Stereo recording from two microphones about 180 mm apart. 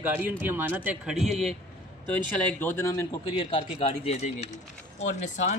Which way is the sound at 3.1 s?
25° left (ahead or behind).